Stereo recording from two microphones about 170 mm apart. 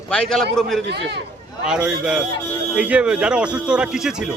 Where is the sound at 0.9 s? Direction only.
80° right.